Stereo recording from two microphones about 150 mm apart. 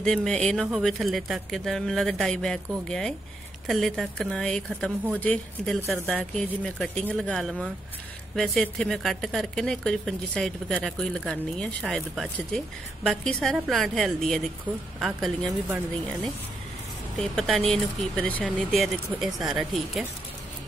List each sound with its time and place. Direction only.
0.0 s speech: 5° left (ahead or behind)
17.2 s speech: 5° left (ahead or behind)